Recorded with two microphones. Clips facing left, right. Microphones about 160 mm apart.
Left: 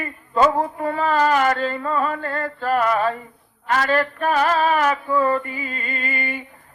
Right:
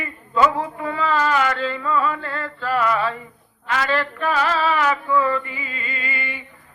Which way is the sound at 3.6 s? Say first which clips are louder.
Left 3 dB; 45° left (ahead or behind).